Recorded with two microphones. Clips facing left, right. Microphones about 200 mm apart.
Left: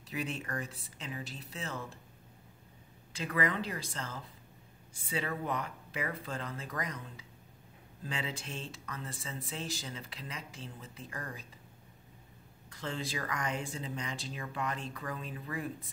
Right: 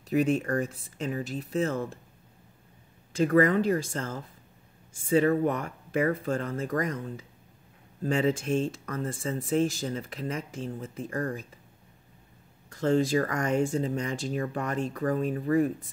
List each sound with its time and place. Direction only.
0.1 s speech: 45° right (ahead or behind)
3.1 s speech: 45° right (ahead or behind)
12.6 s speech: 45° right (ahead or behind)